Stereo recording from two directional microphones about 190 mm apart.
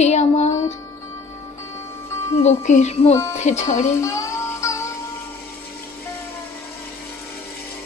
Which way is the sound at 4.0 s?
15° left (ahead or behind).